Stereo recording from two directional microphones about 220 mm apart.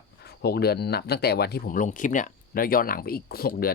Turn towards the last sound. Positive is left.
turn(degrees=45)  # may be behind; listen again after turning